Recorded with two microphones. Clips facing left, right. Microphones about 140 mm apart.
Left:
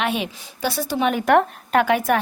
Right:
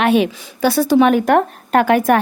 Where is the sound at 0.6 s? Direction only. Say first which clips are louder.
Right 10 dB; 75° right (ahead or behind).